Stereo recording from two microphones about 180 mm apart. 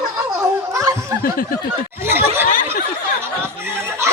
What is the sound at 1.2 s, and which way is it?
Snicker, 55° left (ahead or behind).